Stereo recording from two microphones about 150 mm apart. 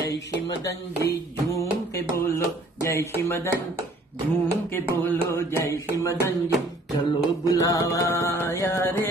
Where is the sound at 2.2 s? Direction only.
20° left (ahead or behind).